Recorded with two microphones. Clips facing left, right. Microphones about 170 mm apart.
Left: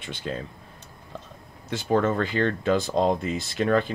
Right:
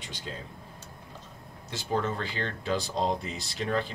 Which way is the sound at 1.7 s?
55° left (ahead or behind).